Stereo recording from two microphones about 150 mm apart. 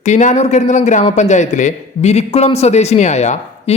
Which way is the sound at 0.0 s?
55° left (ahead or behind).